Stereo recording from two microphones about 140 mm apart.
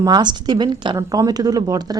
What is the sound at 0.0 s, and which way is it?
Speech, 30° right (ahead or behind).